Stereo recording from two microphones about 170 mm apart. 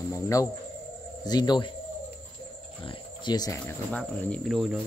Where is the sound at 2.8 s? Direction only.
25° left (ahead or behind).